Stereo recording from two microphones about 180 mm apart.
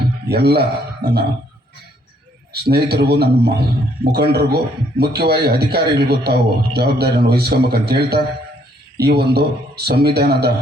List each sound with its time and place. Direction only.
0.0 s speech: 60° right (ahead or behind)
2.5 s a man's voice: 65° right (ahead or behind)